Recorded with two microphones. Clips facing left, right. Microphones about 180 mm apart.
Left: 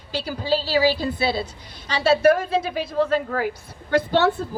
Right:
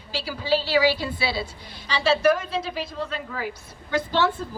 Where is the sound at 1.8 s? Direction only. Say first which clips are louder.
Left 3 dB; 50° left (ahead or behind).